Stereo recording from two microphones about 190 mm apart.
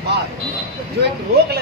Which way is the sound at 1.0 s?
60° right (ahead or behind).